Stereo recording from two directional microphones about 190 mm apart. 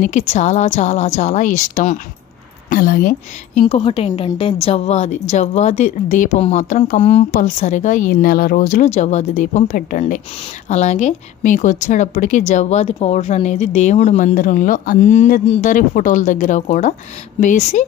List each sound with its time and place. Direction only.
0.0 s a woman's voice: 40° left (ahead or behind)
3.6 s a woman's voice: 30° left (ahead or behind)